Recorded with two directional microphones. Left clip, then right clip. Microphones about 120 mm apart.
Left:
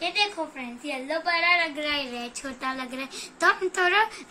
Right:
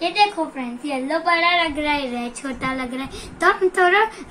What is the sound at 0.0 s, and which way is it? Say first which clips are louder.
A woman's voice: right 8 dB; 25° left (ahead or behind).